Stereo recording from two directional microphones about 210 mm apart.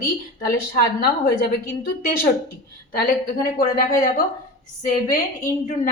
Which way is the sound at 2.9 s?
45° left (ahead or behind).